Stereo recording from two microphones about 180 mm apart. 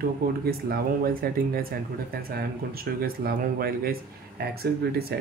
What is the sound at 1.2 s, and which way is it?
Speech, 55° right (ahead or behind).